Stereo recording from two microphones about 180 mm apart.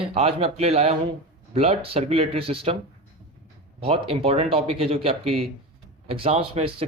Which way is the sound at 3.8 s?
30° right (ahead or behind).